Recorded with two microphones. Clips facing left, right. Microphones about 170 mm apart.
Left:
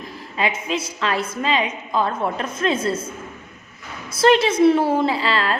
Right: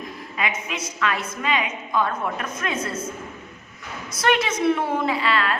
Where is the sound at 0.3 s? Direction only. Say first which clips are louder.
Left 5 dB; 30° left (ahead or behind).